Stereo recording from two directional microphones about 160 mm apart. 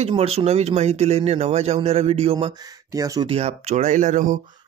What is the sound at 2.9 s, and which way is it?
Speech, 20° right (ahead or behind).